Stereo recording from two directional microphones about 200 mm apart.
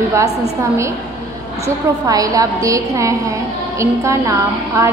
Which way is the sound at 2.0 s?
15° right (ahead or behind).